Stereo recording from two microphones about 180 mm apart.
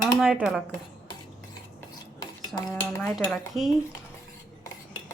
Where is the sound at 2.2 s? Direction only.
20° left (ahead or behind).